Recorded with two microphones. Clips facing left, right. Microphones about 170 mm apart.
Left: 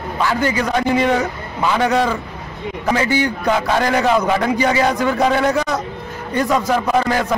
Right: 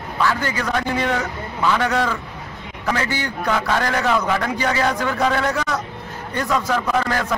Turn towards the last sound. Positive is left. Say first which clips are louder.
# left 4 dB
turn(degrees=15)  # may be behind; listen again after turning